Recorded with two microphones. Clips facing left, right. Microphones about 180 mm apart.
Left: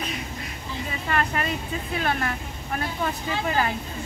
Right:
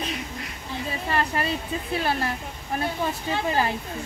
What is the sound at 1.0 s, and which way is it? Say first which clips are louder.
Speech: even; 30° right (ahead or behind).